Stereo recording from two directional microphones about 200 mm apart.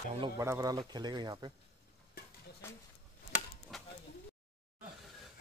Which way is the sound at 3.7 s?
Centre (ahead or behind).